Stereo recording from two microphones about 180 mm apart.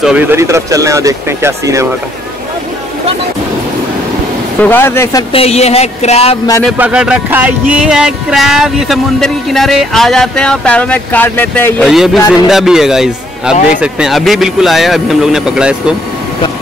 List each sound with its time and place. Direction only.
0.0 s music: 5° right (ahead or behind)
0.4 s speech: 15° right (ahead or behind)
4.6 s speech: 10° left (ahead or behind)
5.3 s speech: 35° left (ahead or behind)
6.8 s music: 5° right (ahead or behind); by 11.9 s 10° left (ahead or behind)
11.9 s music: centre (ahead or behind)